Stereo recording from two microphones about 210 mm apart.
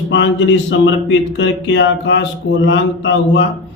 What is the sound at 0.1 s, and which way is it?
Speech, 60° left (ahead or behind).